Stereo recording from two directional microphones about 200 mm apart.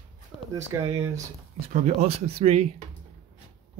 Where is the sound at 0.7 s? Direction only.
15° right (ahead or behind).